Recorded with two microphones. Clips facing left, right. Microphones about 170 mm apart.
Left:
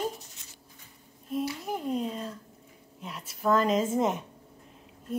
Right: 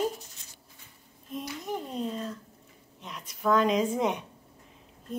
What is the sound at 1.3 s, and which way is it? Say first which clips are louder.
Speech: left 3 dB; 10° left (ahead or behind).